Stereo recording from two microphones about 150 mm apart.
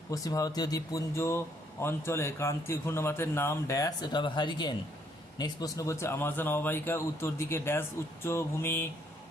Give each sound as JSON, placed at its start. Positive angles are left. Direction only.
{"t": 0.1, "sound": "speech", "side_deg": 25}